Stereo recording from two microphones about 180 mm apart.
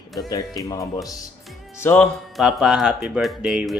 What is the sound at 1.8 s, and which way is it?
Speech, 10° left (ahead or behind).